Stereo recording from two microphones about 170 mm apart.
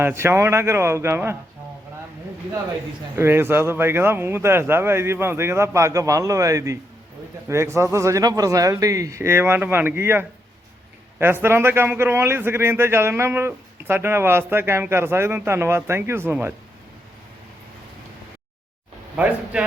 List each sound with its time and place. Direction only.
0.0 s a man's voice: 15° right (ahead or behind)
3.2 s a man's voice: 15° right (ahead or behind)
19.1 s speech: 5° right (ahead or behind)